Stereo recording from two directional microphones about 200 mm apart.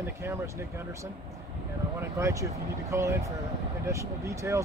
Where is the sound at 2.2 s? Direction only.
15° right (ahead or behind).